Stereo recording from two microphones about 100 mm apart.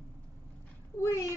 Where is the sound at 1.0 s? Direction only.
30° left (ahead or behind).